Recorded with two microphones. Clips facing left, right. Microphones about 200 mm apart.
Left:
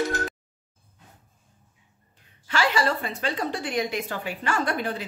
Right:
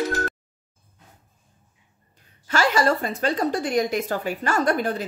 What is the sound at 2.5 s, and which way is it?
Speech, 45° right (ahead or behind).